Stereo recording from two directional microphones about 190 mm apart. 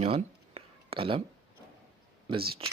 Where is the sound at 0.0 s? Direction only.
30° right (ahead or behind).